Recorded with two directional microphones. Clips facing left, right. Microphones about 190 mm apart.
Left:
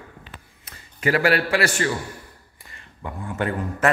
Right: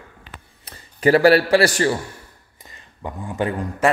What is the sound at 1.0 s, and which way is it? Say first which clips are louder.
Speech: right 7 dB; 30° right (ahead or behind).